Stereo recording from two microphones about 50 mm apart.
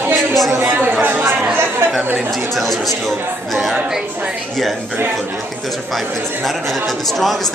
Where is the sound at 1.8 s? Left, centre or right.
Right.